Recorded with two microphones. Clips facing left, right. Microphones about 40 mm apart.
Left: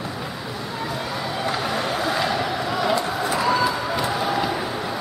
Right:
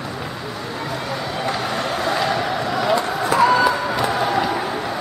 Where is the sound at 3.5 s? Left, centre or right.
Centre.